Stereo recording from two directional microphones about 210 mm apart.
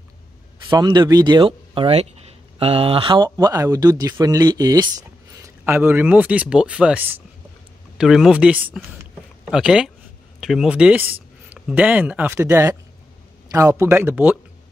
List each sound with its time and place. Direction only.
0.7 s a man's voice: 20° right (ahead or behind)